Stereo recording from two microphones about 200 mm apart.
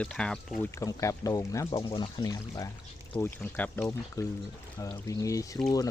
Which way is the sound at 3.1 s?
10° left (ahead or behind).